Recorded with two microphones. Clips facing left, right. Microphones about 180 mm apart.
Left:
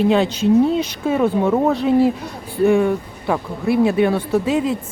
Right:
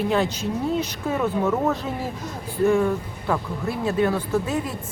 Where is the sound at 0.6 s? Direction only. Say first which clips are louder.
Left 7 dB; 90° left.